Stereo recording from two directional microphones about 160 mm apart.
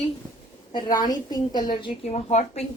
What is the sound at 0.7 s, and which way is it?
Speech, 25° left (ahead or behind).